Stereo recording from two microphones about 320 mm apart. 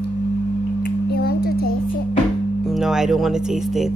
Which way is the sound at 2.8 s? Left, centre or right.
Centre.